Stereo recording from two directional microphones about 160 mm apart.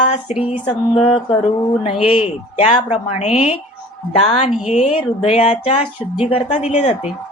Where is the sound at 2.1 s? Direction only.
40° left (ahead or behind).